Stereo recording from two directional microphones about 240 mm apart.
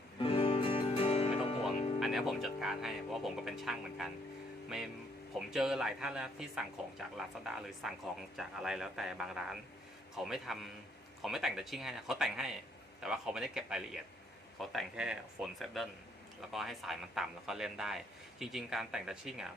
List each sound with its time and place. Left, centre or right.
0.2 s music: left
2.0 s speech: centre